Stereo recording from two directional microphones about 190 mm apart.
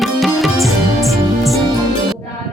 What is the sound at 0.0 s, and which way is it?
Music, centre (ahead or behind).